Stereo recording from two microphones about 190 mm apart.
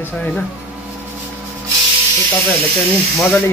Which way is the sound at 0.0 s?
10° left (ahead or behind).